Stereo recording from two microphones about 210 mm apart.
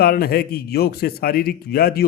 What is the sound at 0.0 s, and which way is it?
A man's voice, 45° left (ahead or behind).